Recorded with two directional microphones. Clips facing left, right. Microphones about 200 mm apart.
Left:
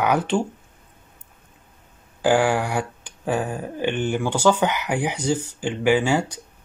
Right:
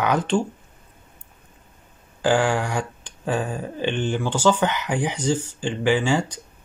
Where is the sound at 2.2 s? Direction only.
10° left (ahead or behind).